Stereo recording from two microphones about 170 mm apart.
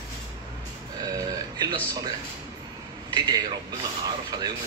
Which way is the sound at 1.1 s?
20° right (ahead or behind).